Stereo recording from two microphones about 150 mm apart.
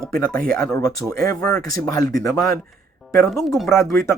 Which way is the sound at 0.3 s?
20° left (ahead or behind).